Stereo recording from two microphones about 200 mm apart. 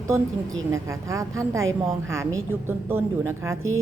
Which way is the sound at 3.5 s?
90° right.